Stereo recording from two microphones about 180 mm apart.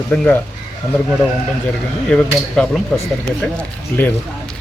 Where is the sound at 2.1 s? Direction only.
5° left (ahead or behind).